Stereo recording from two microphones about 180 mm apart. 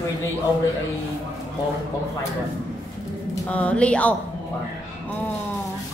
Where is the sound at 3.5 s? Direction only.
5° left (ahead or behind).